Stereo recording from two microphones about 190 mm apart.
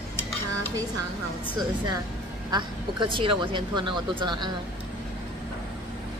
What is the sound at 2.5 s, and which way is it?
A woman's voice, 25° right (ahead or behind).